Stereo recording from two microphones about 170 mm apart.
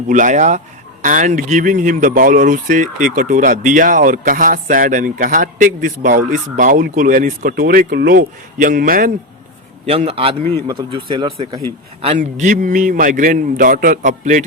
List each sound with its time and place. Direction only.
0.1 s speech: 50° right (ahead or behind)
9.8 s a man's voice: 40° right (ahead or behind)
12.2 s speech: 45° right (ahead or behind)